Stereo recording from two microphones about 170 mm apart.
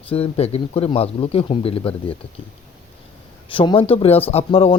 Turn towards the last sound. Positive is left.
turn(degrees=35)  # may be behind; listen again after turning